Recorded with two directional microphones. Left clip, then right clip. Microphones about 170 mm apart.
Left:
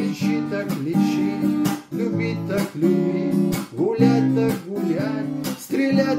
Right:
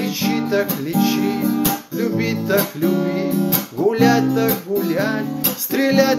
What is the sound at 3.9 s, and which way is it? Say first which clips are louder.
Music: right 3 dB; 15° left (ahead or behind).